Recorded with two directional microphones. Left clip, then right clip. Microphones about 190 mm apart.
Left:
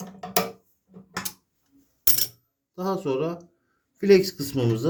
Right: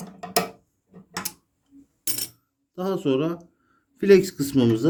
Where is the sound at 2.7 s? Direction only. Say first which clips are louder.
Right 2 dB; 35° right (ahead or behind).